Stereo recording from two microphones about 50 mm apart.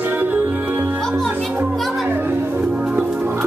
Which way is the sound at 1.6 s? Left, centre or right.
Right.